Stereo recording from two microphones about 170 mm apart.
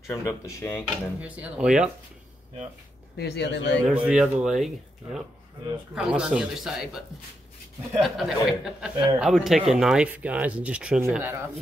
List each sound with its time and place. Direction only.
0.0 s speech: 15° left (ahead or behind)
1.2 s speech: 5° right (ahead or behind)
3.2 s speech: 75° left (ahead or behind); by 3.8 s 90° left
3.8 s speech: 5° right (ahead or behind)
5.9 s speech: 5° right (ahead or behind)
8.0 s speech: centre (ahead or behind)